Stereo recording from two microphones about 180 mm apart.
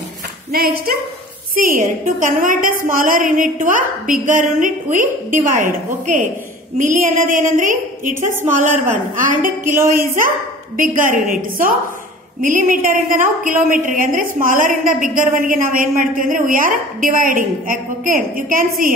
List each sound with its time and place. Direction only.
0.5 s a woman's voice: 55° right (ahead or behind)